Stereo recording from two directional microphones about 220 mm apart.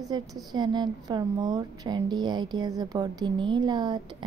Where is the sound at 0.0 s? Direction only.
15° right (ahead or behind).